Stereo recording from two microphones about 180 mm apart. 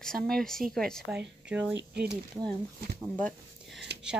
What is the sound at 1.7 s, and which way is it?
Speech, 65° right (ahead or behind).